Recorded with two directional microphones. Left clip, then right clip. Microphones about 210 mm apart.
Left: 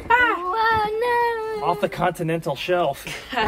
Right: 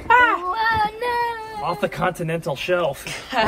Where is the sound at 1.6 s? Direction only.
50° left (ahead or behind).